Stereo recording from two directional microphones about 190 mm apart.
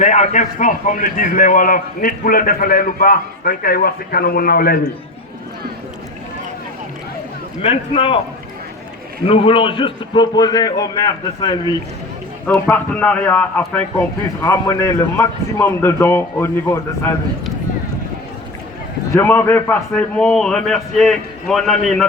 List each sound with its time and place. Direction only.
0.0 s a man's voice: 40° left (ahead or behind)
7.6 s a man's voice: 30° left (ahead or behind)
9.2 s a man's voice: 30° left (ahead or behind)
12.5 s a man's voice: 10° left (ahead or behind)
19.1 s a man's voice: 10° left (ahead or behind)